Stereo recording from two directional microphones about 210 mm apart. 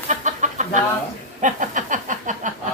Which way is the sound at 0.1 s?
35° right (ahead or behind).